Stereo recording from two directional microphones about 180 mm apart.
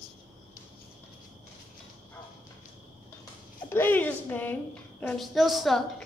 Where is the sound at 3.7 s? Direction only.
10° left (ahead or behind).